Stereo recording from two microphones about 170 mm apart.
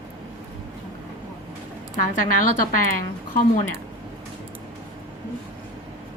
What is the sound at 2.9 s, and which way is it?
Speech, 55° left (ahead or behind).